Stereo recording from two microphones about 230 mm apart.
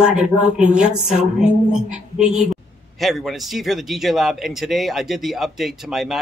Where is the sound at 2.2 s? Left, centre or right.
Right.